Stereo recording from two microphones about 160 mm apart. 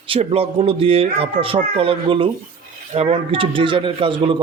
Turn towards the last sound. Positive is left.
turn(degrees=-30)  # may be behind; listen again after turning